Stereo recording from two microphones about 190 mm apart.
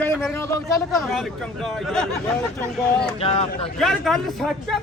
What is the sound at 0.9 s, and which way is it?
Speech, centre (ahead or behind).